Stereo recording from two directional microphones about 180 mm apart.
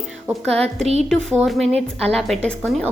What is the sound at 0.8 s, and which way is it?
Speech, 35° right (ahead or behind).